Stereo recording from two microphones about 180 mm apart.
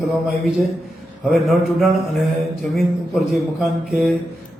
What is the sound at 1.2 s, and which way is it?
Speech, centre (ahead or behind).